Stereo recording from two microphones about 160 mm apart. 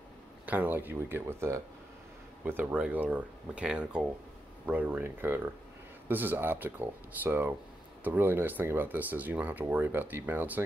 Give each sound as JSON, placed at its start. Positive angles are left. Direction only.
{"t": 0.5, "sound": "speech", "side_deg": -10}